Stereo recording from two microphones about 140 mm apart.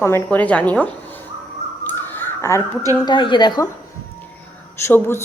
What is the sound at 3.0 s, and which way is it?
Speech, 35° left (ahead or behind).